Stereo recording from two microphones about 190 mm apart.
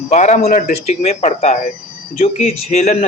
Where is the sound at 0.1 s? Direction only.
40° left (ahead or behind).